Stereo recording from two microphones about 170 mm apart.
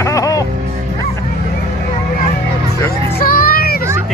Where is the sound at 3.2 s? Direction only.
60° left (ahead or behind).